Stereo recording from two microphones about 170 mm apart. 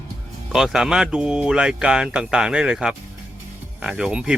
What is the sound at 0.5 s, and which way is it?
Speech, 5° right (ahead or behind).